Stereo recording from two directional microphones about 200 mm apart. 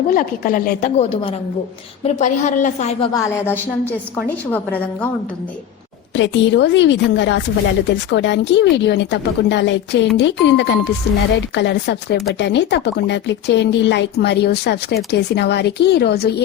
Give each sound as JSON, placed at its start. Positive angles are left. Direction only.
{"t": 0.1, "sound": "speech", "side_deg": 45}
{"t": 0.9, "sound": "a woman's voice", "side_deg": 30}
{"t": 3.1, "sound": "a woman's voice", "side_deg": 15}
{"t": 6.1, "sound": "speech", "side_deg": 65}